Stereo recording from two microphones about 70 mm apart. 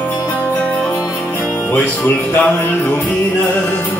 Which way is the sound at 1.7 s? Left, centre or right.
Left.